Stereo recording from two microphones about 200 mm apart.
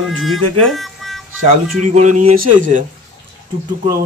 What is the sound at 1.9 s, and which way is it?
Speech, 35° right (ahead or behind).